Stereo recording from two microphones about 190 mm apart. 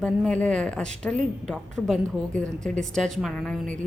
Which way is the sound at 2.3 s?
40° right (ahead or behind).